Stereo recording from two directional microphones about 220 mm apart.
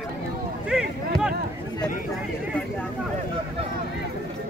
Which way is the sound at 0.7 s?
5° right (ahead or behind).